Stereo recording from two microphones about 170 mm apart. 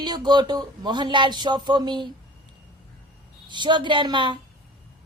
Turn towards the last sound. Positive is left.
turn(degrees=-30)  # may be behind; listen again after turning